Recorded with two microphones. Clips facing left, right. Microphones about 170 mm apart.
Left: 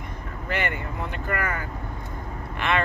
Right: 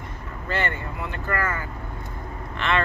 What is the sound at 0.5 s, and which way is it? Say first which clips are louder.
Speech: right 1 dB; 15° left (ahead or behind).